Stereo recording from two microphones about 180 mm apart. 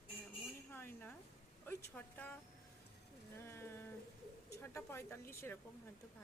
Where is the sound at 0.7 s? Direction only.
10° left (ahead or behind).